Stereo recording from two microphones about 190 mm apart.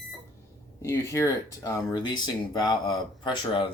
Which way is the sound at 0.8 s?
15° left (ahead or behind).